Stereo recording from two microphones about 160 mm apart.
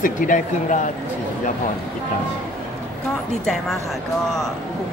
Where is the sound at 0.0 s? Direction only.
55° left (ahead or behind).